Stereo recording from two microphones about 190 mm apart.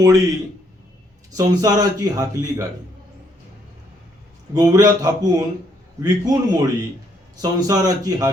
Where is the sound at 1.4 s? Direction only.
20° right (ahead or behind).